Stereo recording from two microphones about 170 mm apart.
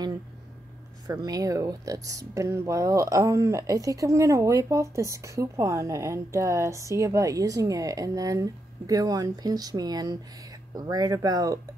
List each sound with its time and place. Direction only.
1.0 s speech: 20° right (ahead or behind)